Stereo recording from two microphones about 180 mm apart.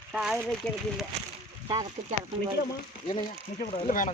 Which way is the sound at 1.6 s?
25° right (ahead or behind).